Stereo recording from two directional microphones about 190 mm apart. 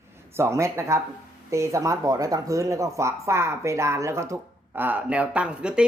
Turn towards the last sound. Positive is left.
turn(degrees=-5)  # may be behind; listen again after turning